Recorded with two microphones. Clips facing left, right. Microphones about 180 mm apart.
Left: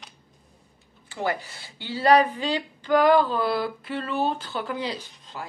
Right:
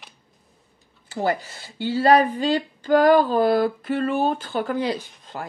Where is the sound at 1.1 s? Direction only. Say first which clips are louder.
Right 4 dB; 40° right (ahead or behind).